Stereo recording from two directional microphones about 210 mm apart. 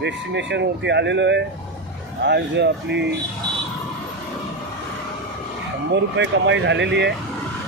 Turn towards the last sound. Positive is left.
turn(degrees=-55)  # may be behind; listen again after turning